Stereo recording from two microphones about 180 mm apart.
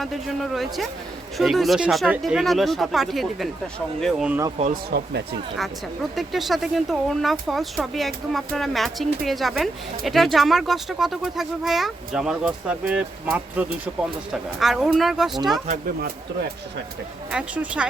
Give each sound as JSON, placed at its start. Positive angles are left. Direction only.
{"t": 0.0, "sound": "speech", "side_deg": 0}
{"t": 4.7, "sound": "speech", "side_deg": -65}
{"t": 5.5, "sound": "speech", "side_deg": 0}
{"t": 16.0, "sound": "speech", "side_deg": -60}
{"t": 17.3, "sound": "speech", "side_deg": -5}